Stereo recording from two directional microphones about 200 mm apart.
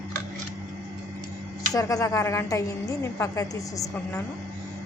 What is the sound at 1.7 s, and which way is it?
A woman's voice, 15° left (ahead or behind).